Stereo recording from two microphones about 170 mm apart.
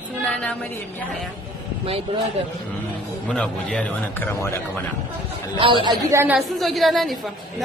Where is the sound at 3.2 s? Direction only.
5° left (ahead or behind).